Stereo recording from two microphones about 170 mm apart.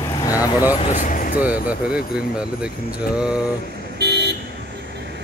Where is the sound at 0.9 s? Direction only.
50° left (ahead or behind).